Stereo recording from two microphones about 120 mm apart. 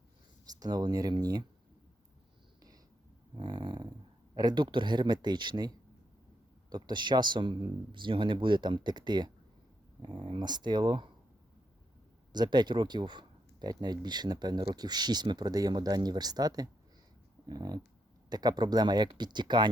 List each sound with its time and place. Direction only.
0.4 s speech: 35° right (ahead or behind)
3.3 s dog: 40° right (ahead or behind)
4.4 s speech: 40° right (ahead or behind)
12.3 s speech: 40° right (ahead or behind)